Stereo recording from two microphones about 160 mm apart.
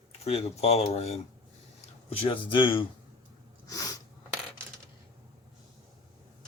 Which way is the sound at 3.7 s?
20° left (ahead or behind).